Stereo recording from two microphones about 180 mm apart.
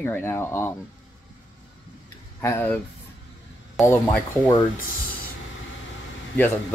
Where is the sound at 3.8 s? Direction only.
15° left (ahead or behind).